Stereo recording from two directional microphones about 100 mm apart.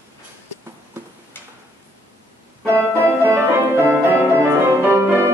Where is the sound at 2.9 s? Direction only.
25° right (ahead or behind).